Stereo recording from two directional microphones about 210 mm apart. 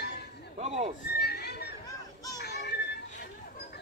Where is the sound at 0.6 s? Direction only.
30° right (ahead or behind).